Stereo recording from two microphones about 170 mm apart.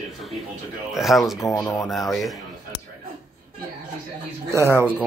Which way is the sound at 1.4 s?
20° left (ahead or behind).